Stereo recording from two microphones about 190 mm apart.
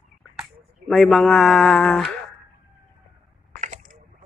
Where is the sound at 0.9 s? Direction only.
Centre (ahead or behind).